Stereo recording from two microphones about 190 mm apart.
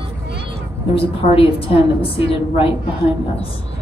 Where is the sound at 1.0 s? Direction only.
30° left (ahead or behind).